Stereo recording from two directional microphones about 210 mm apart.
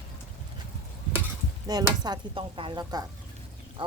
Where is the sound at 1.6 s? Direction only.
20° right (ahead or behind).